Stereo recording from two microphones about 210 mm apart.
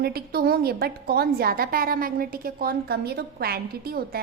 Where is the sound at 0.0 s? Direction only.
45° right (ahead or behind).